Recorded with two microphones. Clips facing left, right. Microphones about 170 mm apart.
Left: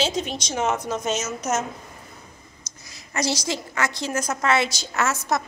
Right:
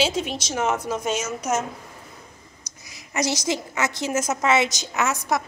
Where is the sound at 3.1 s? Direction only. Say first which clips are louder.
Right 1 dB; 20° right (ahead or behind).